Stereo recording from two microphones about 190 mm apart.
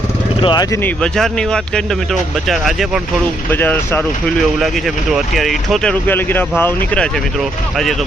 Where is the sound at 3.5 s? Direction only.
10° left (ahead or behind).